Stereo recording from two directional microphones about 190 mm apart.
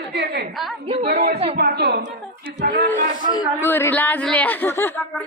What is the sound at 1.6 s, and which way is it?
Speech, 60° right (ahead or behind).